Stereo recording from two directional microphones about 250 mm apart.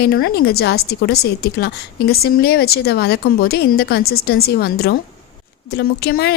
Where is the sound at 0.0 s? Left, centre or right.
Left.